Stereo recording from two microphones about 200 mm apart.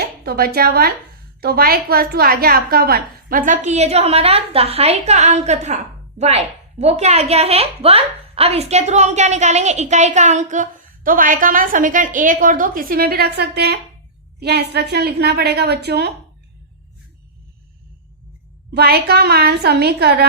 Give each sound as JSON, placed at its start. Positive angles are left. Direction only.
{"t": 0.3, "sound": "a woman's voice", "side_deg": -50}
{"t": 18.7, "sound": "a woman's voice", "side_deg": -50}